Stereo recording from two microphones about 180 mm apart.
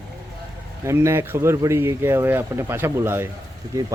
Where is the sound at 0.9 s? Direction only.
15° right (ahead or behind).